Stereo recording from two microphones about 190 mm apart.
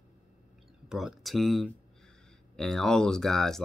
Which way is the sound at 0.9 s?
5° right (ahead or behind).